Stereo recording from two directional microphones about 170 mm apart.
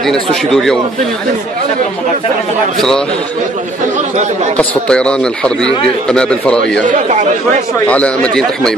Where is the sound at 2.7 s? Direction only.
Centre (ahead or behind).